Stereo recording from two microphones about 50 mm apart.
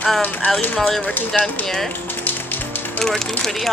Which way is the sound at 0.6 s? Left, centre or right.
Left.